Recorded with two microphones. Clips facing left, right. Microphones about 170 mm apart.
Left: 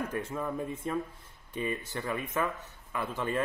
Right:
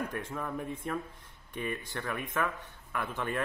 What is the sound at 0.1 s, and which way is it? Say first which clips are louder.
A man's voice: left 3 dB; 10° left (ahead or behind).